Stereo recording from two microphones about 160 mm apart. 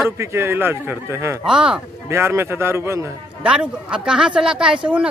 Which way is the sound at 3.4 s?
5° right (ahead or behind).